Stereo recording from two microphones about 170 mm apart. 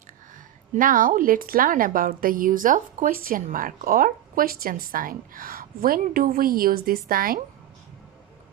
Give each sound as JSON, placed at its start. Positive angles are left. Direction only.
{"t": 0.7, "sound": "a woman's voice", "side_deg": -50}